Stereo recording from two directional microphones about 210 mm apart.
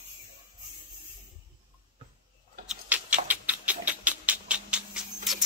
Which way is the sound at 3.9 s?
5° right (ahead or behind).